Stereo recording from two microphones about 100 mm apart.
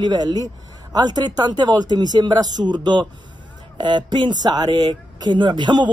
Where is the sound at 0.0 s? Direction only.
40° right (ahead or behind).